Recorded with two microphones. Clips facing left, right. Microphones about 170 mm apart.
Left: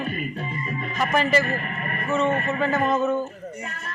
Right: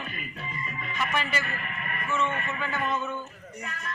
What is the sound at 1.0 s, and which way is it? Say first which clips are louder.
Speech: left 9 dB; 40° left (ahead or behind).